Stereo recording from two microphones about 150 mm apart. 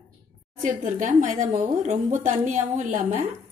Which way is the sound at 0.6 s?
55° right (ahead or behind).